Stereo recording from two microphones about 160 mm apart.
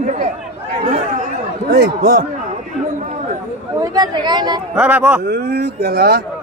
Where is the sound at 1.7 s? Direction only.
75° right (ahead or behind).